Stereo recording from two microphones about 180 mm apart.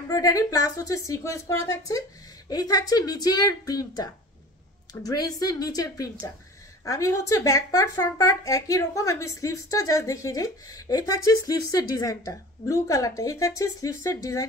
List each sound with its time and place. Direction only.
0.1 s speech: 20° left (ahead or behind)